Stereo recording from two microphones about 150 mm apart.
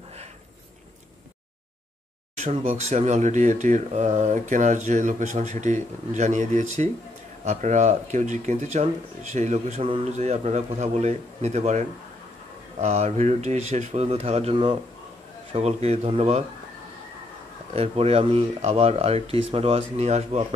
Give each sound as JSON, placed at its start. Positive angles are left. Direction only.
{"t": 2.3, "sound": "speech", "side_deg": -50}
{"t": 12.8, "sound": "speech", "side_deg": -45}
{"t": 15.5, "sound": "speech", "side_deg": -45}
{"t": 17.7, "sound": "speech", "side_deg": -40}